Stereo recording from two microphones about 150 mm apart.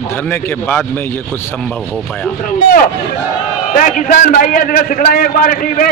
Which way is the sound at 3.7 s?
60° left (ahead or behind).